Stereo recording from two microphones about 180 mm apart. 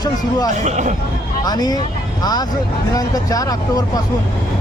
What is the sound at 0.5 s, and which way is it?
Speech, 40° right (ahead or behind).